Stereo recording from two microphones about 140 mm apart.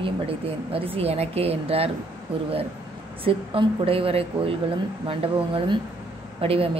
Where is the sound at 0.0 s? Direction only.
40° right (ahead or behind).